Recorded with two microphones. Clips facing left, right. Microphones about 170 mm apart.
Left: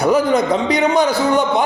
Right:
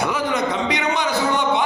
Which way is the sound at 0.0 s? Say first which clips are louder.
Left 7 dB; 40° left (ahead or behind).